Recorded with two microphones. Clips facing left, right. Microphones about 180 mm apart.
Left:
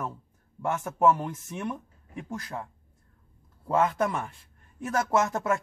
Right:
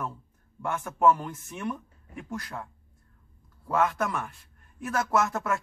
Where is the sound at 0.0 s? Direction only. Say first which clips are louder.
Even; 25° left (ahead or behind).